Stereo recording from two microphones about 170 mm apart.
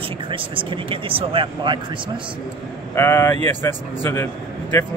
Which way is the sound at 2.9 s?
15° left (ahead or behind).